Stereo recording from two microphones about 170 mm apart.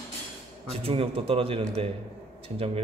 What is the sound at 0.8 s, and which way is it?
A man's voice, 35° right (ahead or behind).